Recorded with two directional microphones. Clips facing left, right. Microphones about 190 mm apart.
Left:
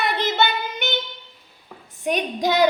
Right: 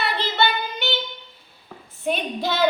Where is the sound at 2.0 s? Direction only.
15° left (ahead or behind).